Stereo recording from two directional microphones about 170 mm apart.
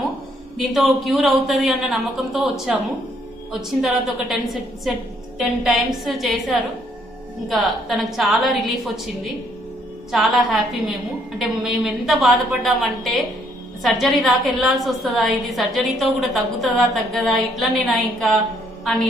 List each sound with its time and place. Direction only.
0.6 s a woman's voice: centre (ahead or behind)
3.8 s a woman's voice: centre (ahead or behind)